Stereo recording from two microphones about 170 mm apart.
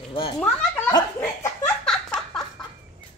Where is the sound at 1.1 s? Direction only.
5° left (ahead or behind).